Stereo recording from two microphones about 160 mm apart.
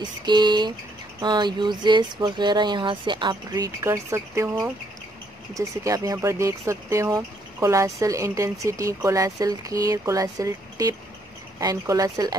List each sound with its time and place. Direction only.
0.0 s speech: 25° right (ahead or behind)